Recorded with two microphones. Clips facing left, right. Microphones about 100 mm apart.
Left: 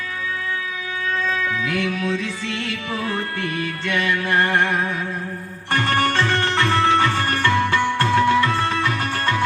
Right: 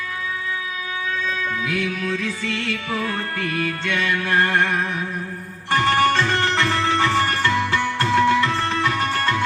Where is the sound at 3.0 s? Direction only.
25° left (ahead or behind).